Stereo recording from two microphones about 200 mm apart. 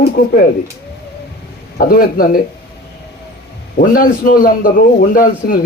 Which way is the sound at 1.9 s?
45° left (ahead or behind).